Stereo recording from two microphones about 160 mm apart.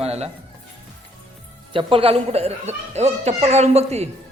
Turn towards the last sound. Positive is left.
turn(degrees=-40)  # may be behind; listen again after turning